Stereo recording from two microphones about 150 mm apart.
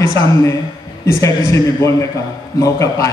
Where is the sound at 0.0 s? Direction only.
20° left (ahead or behind).